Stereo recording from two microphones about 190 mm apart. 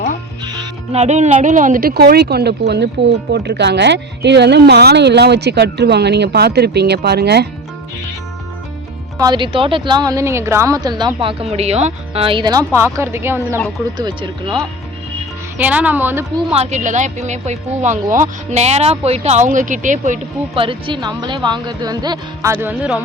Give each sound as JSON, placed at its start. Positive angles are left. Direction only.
{"t": 0.4, "sound": "music", "side_deg": -20}
{"t": 0.9, "sound": "speech", "side_deg": -35}
{"t": 9.1, "sound": "a woman's voice", "side_deg": -20}
{"t": 14.0, "sound": "a woman's voice", "side_deg": -25}
{"t": 15.5, "sound": "a woman's voice", "side_deg": -10}
{"t": 16.6, "sound": "speech", "side_deg": -35}
{"t": 20.6, "sound": "a woman's voice", "side_deg": -30}
{"t": 22.5, "sound": "a woman's voice", "side_deg": -10}